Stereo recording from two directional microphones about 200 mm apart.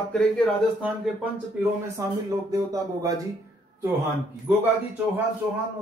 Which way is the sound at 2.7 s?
20° right (ahead or behind).